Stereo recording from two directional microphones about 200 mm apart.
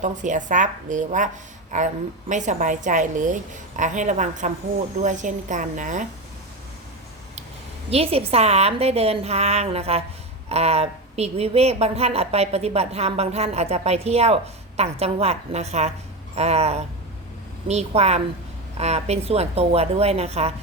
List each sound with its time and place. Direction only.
0.0 s speech: 40° right (ahead or behind)
7.9 s speech: 30° right (ahead or behind)